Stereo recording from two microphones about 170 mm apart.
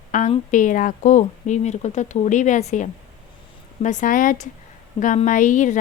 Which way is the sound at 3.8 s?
50° left (ahead or behind).